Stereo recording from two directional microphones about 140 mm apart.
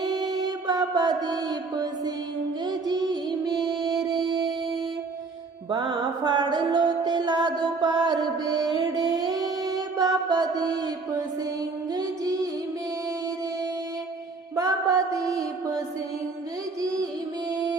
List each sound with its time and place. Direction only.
0.0 s music: 30° right (ahead or behind)
5.7 s music: 35° right (ahead or behind)
14.5 s music: 25° right (ahead or behind)